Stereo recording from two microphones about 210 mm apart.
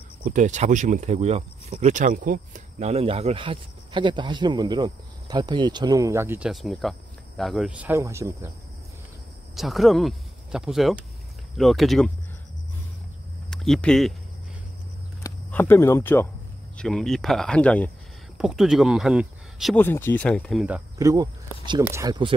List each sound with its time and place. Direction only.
0.2 s speech: 35° right (ahead or behind); by 8.5 s 15° right (ahead or behind)
9.6 s speech: centre (ahead or behind)
13.5 s speech: centre (ahead or behind)
15.2 s speech: 10° left (ahead or behind)
19.8 s speech: 10° left (ahead or behind)
21.0 s speech: 15° right (ahead or behind)